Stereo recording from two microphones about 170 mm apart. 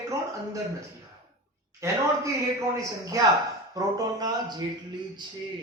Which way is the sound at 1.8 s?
20° right (ahead or behind).